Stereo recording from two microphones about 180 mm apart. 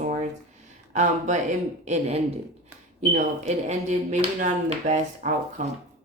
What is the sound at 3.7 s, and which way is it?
Speech, 45° right (ahead or behind).